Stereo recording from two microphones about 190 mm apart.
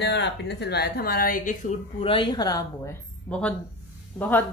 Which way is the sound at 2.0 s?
25° left (ahead or behind).